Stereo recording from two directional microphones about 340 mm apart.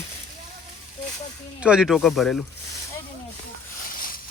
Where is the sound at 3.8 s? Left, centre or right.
Left.